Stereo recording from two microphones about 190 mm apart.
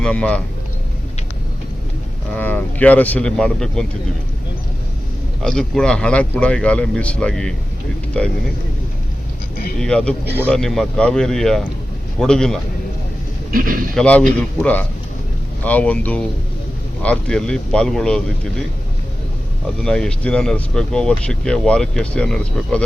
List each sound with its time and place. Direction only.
0.0 s a man's voice: 5° left (ahead or behind)
2.3 s speech: 10° left (ahead or behind)
5.4 s speech: 5° left (ahead or behind)
9.8 s speech: 5° left (ahead or behind)
13.5 s speech: 50° right (ahead or behind)
13.9 s speech: 5° left (ahead or behind)
19.8 s speech: 5° left (ahead or behind)